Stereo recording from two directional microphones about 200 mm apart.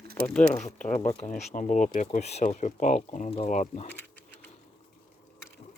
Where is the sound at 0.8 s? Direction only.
35° left (ahead or behind).